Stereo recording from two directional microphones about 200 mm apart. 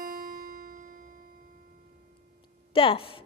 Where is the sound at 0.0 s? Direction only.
45° right (ahead or behind).